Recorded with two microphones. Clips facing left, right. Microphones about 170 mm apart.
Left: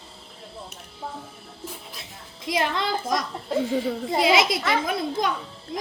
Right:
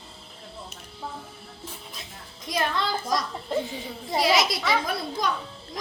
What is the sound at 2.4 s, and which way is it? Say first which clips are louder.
A child's voice: left 2 dB; 20° left (ahead or behind).